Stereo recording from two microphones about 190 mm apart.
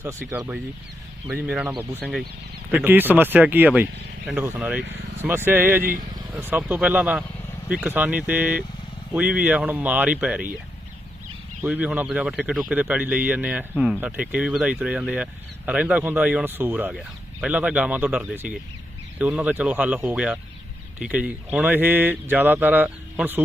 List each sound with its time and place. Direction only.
0.0 s speech: 15° right (ahead or behind)
4.8 s speech: 65° right (ahead or behind)
5.5 s speech: 10° right (ahead or behind)
5.8 s speech: 50° right (ahead or behind)
6.3 s speech: 10° right (ahead or behind)
11.6 s speech: 10° right (ahead or behind)